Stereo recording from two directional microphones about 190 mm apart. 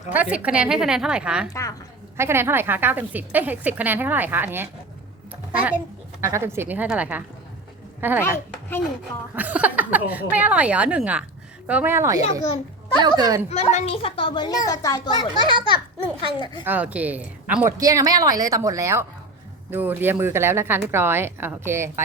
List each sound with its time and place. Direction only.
0.1 s a woman's voice: 10° right (ahead or behind)
9.3 s a woman's voice: 10° right (ahead or behind)
13.5 s a child's voice: 35° left (ahead or behind)
16.6 s a woman's voice: 10° right (ahead or behind)